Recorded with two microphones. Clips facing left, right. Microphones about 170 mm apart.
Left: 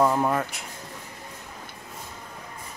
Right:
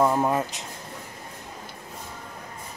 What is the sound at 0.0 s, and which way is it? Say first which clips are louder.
Speech: even; 15° right (ahead or behind).